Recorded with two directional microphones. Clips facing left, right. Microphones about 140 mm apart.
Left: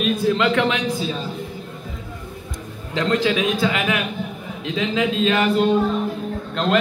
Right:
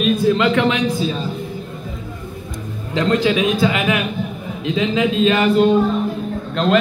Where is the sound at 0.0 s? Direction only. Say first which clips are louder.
Right 3 dB; 5° right (ahead or behind).